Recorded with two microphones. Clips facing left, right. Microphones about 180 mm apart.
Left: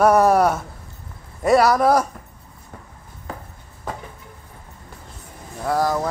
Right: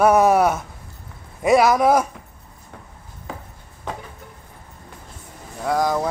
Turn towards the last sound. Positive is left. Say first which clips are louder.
# even
turn(degrees=0)  # may be behind; listen again after turning